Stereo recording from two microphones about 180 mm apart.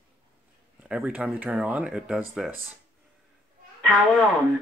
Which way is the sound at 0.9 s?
5° right (ahead or behind).